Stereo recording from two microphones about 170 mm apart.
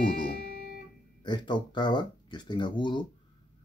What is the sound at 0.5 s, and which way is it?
Music, 65° right (ahead or behind).